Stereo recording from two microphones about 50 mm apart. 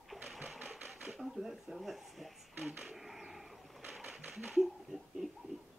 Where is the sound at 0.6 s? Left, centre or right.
Right.